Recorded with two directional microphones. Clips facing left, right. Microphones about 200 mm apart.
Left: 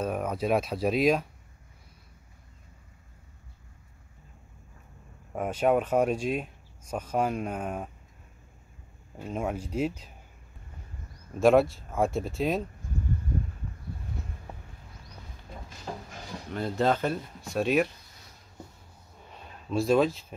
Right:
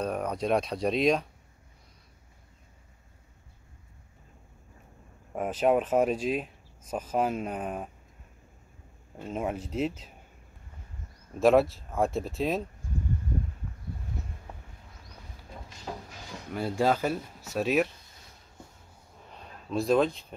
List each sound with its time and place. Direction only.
0.0 s speech: 5° left (ahead or behind)
5.3 s speech: centre (ahead or behind)
9.1 s speech: centre (ahead or behind)
11.3 s speech: centre (ahead or behind)
15.9 s a sound: 5° right (ahead or behind)
16.4 s speech: 10° right (ahead or behind)
19.2 s a sound: centre (ahead or behind)